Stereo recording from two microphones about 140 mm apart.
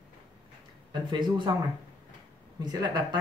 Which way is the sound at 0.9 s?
35° right (ahead or behind).